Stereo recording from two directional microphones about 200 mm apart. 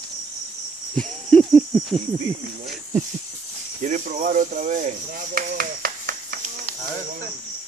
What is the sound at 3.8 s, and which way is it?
Speech, 40° right (ahead or behind).